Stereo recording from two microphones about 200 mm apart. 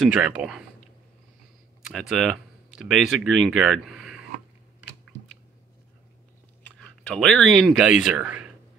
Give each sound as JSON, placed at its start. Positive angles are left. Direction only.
{"t": 0.0, "sound": "speech", "side_deg": -5}
{"t": 2.0, "sound": "speech", "side_deg": 0}
{"t": 6.8, "sound": "speech", "side_deg": 0}